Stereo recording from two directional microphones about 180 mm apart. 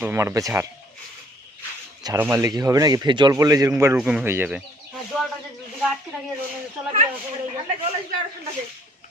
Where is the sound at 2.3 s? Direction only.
20° right (ahead or behind).